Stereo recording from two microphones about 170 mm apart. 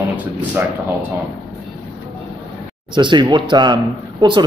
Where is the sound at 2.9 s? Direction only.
25° right (ahead or behind).